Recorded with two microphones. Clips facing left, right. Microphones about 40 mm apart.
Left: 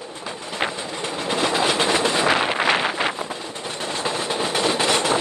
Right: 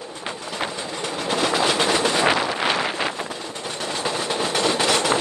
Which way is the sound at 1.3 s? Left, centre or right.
Centre.